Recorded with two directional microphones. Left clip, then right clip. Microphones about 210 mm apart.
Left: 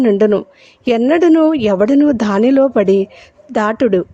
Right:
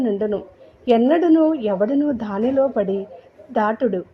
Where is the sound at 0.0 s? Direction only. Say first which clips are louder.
Left 10 dB; 30° left (ahead or behind).